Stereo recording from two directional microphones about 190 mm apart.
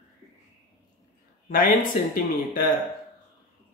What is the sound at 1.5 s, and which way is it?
Speech, 45° left (ahead or behind).